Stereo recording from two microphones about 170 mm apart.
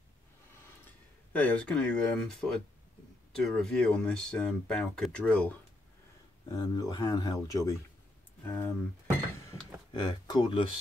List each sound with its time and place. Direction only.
1.3 s speech: 10° left (ahead or behind)
6.5 s speech: 20° left (ahead or behind)
9.9 s speech: 25° left (ahead or behind)